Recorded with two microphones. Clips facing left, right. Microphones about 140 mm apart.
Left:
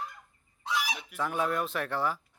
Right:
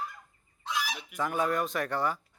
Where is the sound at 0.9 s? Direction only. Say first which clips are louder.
Even; centre (ahead or behind).